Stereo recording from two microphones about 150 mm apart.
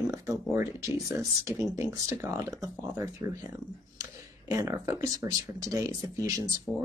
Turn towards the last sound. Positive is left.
turn(degrees=-25)  # may be behind; listen again after turning